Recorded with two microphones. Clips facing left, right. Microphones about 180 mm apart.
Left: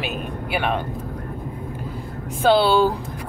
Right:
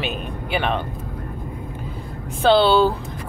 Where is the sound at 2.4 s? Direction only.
10° left (ahead or behind).